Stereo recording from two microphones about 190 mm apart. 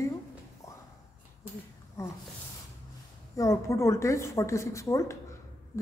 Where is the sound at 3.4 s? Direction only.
15° left (ahead or behind).